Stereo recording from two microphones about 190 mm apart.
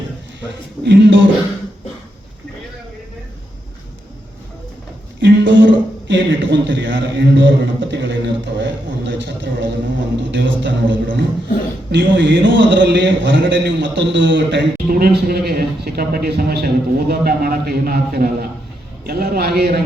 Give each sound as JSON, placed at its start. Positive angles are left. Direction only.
{"t": 0.9, "sound": "a man's voice", "side_deg": -65}
{"t": 5.2, "sound": "a sound", "side_deg": -65}
{"t": 11.9, "sound": "a man's voice", "side_deg": -65}